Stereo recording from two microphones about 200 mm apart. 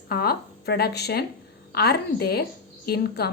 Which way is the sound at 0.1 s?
50° left (ahead or behind).